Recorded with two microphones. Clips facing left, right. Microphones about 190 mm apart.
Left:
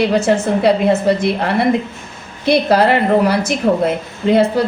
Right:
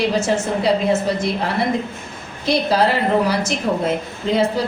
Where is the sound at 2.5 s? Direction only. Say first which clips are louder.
Left 5 dB; 60° left (ahead or behind).